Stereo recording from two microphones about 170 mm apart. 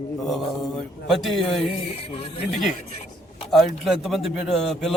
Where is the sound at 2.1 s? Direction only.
35° left (ahead or behind).